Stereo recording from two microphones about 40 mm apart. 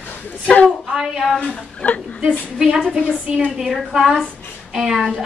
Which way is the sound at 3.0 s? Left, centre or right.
Right.